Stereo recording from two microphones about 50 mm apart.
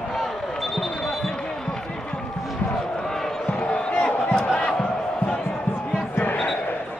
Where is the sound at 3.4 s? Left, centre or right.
Left.